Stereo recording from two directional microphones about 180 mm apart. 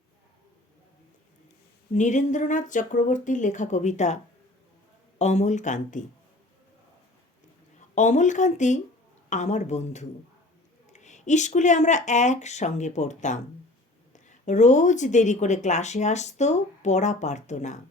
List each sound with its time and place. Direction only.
1.9 s a woman's voice: 40° left (ahead or behind)
7.9 s a woman's voice: 40° left (ahead or behind)